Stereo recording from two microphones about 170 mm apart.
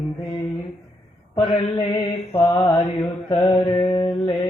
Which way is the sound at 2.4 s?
15° left (ahead or behind).